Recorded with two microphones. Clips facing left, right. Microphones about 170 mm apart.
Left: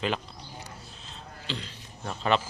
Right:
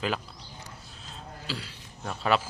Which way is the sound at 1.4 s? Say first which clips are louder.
Left 2 dB; 5° right (ahead or behind).